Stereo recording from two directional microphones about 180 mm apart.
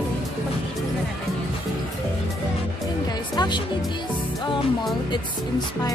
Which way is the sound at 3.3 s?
25° left (ahead or behind).